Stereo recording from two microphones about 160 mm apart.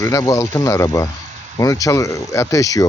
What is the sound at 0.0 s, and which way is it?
Speech, 20° left (ahead or behind).